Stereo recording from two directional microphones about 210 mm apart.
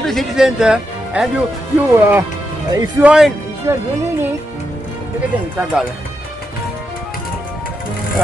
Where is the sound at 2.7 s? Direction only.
15° right (ahead or behind).